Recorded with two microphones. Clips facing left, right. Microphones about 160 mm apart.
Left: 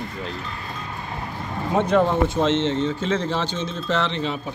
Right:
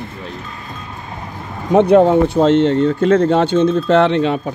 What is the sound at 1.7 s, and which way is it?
Speech, 75° right (ahead or behind).